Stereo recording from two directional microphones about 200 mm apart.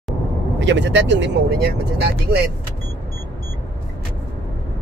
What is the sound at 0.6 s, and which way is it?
Speech, 60° right (ahead or behind).